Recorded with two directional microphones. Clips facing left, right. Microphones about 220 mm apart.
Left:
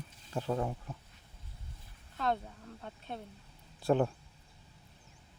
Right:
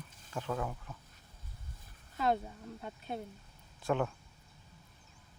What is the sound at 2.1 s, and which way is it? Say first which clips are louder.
Speech: right 2 dB; 5° right (ahead or behind).